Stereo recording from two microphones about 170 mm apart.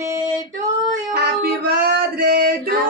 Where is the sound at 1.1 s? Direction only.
65° right (ahead or behind).